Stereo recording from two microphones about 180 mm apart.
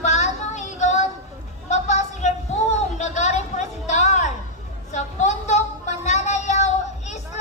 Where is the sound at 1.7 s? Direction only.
40° left (ahead or behind).